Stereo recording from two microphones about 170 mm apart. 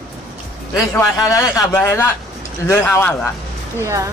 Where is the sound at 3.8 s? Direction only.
15° right (ahead or behind).